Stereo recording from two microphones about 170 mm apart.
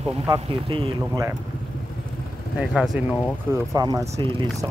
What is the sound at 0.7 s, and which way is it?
Speech, 30° right (ahead or behind).